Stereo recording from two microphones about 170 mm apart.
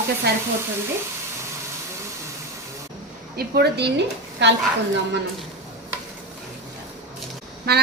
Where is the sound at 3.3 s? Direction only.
75° right (ahead or behind).